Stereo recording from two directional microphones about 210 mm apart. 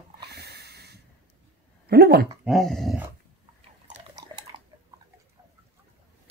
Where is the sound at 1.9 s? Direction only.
50° right (ahead or behind).